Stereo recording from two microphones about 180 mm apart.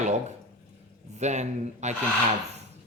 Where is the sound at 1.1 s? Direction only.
40° right (ahead or behind).